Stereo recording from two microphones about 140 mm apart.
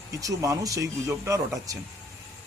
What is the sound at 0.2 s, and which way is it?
A man's voice, 25° right (ahead or behind).